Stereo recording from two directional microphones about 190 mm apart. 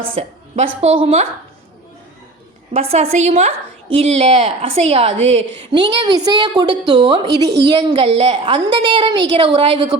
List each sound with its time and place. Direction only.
0.2 s a woman's voice: 35° right (ahead or behind)
2.9 s a woman's voice: 35° right (ahead or behind)